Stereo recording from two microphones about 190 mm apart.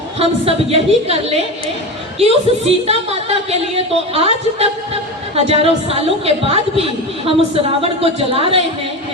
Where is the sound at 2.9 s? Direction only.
30° right (ahead or behind).